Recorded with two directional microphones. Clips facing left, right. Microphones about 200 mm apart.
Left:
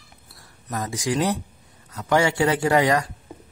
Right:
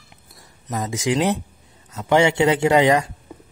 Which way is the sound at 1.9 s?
25° right (ahead or behind).